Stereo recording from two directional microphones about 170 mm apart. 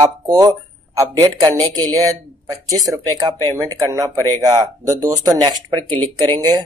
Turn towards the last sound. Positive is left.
turn(degrees=-20)  # may be behind; listen again after turning